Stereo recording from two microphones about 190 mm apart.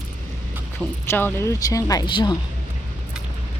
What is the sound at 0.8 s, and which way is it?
Speech, 10° left (ahead or behind).